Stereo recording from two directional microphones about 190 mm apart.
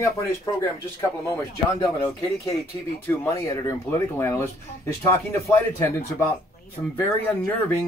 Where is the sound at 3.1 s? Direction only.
15° left (ahead or behind).